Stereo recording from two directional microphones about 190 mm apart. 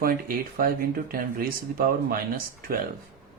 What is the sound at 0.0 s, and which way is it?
A man's voice, 50° right (ahead or behind).